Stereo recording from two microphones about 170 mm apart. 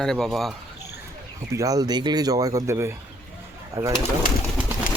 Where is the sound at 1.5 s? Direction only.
20° right (ahead or behind).